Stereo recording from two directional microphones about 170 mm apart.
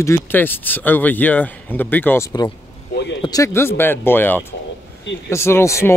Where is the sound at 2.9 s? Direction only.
90° left.